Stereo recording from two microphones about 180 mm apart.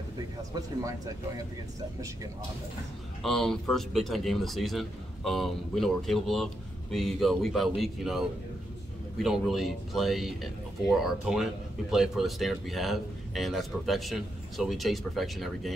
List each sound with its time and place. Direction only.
0.6 s speech: 20° right (ahead or behind)
3.2 s speech: centre (ahead or behind)